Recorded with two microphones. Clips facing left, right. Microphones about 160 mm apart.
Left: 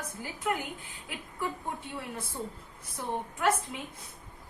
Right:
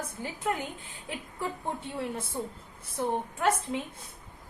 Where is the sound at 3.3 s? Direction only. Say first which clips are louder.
Left 3 dB; 30° right (ahead or behind).